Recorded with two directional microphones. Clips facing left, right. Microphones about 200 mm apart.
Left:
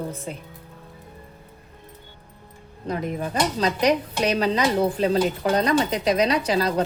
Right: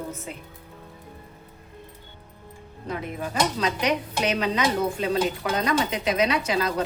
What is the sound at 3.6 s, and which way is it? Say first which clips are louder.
A woman's voice: left 4 dB; 35° left (ahead or behind).